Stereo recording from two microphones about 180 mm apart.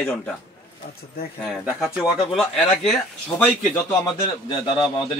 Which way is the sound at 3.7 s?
20° left (ahead or behind).